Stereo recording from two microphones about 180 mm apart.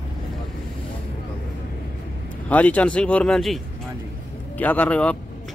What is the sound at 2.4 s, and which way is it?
Speech, 10° left (ahead or behind).